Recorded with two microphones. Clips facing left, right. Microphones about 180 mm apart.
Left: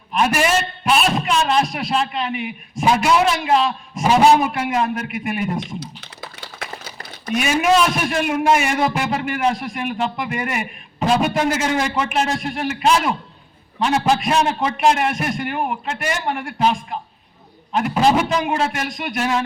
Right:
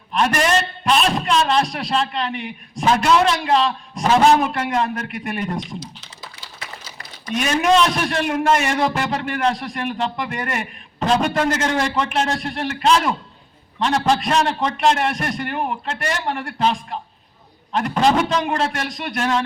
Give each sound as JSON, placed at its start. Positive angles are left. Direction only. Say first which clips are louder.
{"t": 0.1, "sound": "a man's voice", "louder": "even", "side_deg": 5}
{"t": 5.8, "sound": "typing", "louder": "left 3 dB", "side_deg": 55}
{"t": 7.3, "sound": "a man's voice", "louder": "even", "side_deg": 10}